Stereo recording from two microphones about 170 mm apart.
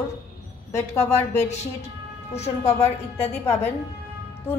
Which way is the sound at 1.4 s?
40° left (ahead or behind).